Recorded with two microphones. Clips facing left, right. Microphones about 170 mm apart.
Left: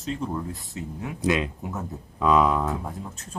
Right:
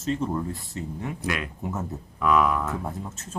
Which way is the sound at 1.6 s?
Centre (ahead or behind).